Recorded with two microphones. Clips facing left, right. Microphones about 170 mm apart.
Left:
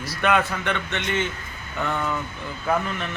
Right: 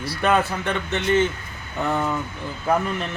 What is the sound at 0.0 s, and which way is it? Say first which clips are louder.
Speech: right 1 dB; 30° right (ahead or behind).